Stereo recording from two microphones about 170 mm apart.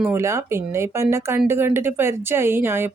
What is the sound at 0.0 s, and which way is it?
Speech, 15° right (ahead or behind).